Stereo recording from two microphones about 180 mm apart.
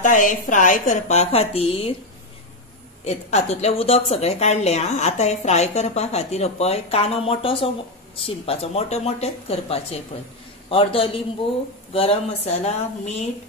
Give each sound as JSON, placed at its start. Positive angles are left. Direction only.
{"t": 0.0, "sound": "a woman's voice", "side_deg": 45}
{"t": 3.0, "sound": "a woman's voice", "side_deg": 40}